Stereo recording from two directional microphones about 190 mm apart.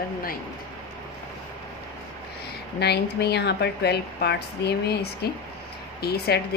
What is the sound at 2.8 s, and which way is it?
Speech, 60° left (ahead or behind).